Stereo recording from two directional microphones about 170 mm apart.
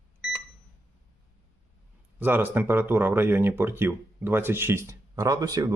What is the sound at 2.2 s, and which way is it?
Speech, 10° right (ahead or behind).